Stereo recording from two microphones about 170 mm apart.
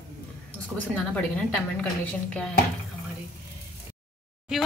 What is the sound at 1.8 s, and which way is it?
Speech, 5° left (ahead or behind).